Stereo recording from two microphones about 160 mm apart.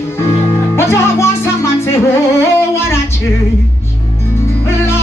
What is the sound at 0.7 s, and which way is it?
Music, 15° left (ahead or behind).